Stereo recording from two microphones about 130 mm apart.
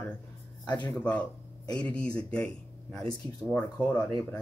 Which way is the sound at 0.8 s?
10° left (ahead or behind).